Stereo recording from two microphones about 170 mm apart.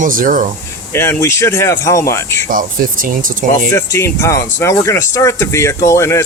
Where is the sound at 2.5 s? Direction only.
55° right (ahead or behind).